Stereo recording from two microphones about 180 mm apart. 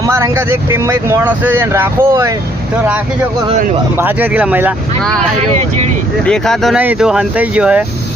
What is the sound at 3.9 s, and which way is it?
Speech, 10° right (ahead or behind).